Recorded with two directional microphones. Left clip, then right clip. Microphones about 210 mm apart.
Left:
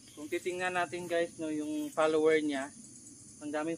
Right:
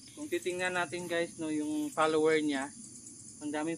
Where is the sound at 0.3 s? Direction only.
20° right (ahead or behind).